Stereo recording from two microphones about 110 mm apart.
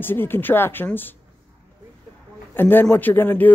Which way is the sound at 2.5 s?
20° left (ahead or behind).